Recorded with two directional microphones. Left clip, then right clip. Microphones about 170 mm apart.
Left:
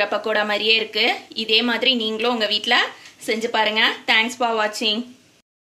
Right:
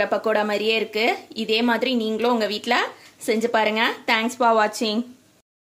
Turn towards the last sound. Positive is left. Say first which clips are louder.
# right 2 dB
turn(degrees=-65)  # may be behind; listen again after turning